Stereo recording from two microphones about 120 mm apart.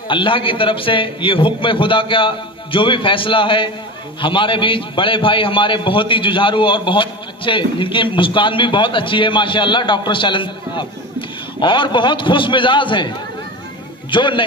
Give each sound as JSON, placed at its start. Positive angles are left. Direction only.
{"t": 0.1, "sound": "a man's voice", "side_deg": 45}
{"t": 14.1, "sound": "a man's voice", "side_deg": 45}